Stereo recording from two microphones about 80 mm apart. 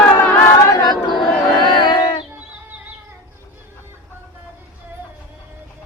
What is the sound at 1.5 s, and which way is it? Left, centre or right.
Battle cry, left.